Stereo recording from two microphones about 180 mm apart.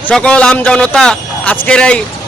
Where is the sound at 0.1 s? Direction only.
5° left (ahead or behind).